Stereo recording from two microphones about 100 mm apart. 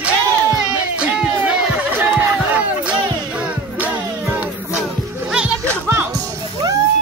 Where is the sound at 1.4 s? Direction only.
10° right (ahead or behind).